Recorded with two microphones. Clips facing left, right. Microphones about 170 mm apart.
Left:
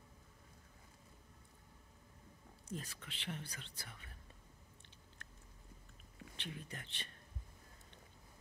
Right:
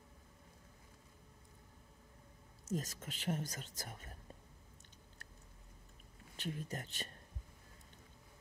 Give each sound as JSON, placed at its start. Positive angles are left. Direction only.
{"t": 2.7, "sound": "speech", "side_deg": -40}
{"t": 6.3, "sound": "speech", "side_deg": -40}